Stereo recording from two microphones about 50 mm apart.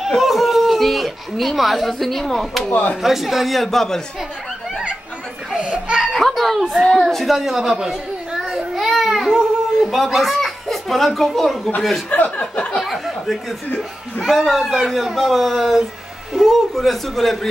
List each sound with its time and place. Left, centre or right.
0.0 s speech: centre
2.7 s speech: left
3.0 s speech: centre
5.6 s laughter: centre
5.9 s a sound: centre
12.1 s chuckle: left
12.8 s a sound: centre
14.2 s a man's voice: centre